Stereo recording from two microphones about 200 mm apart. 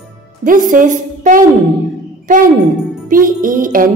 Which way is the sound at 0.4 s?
40° right (ahead or behind).